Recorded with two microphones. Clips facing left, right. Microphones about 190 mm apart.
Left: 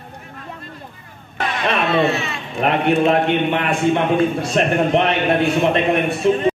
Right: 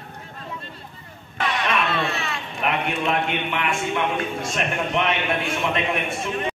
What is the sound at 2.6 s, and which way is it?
A man's voice, 40° left (ahead or behind).